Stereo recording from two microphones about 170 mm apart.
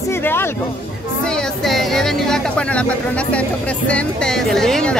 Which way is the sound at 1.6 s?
Centre (ahead or behind).